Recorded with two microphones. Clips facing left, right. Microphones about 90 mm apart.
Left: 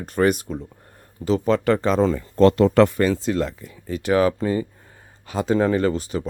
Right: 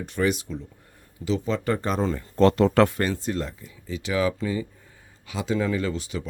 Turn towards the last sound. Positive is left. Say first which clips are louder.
# left 6 dB
turn(degrees=40)  # may be behind; listen again after turning